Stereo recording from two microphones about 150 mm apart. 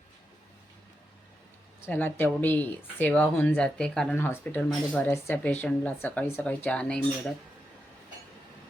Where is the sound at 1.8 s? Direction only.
15° left (ahead or behind).